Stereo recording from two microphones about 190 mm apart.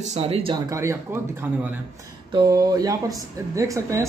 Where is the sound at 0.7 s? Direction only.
15° right (ahead or behind).